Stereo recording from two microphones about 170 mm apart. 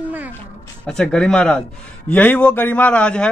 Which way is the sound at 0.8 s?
5° left (ahead or behind).